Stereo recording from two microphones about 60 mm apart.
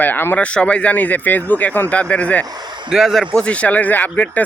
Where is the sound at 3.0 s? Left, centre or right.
Centre.